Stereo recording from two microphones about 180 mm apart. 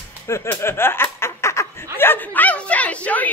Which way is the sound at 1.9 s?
10° left (ahead or behind).